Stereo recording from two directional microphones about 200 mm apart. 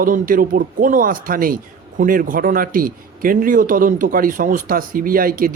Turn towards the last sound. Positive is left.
turn(degrees=-45)  # may be behind; listen again after turning